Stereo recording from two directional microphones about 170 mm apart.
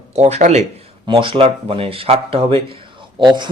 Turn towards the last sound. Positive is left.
turn(degrees=-25)  # may be behind; listen again after turning